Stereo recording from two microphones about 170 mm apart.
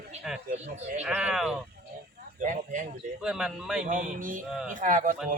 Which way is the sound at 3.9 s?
50° right (ahead or behind).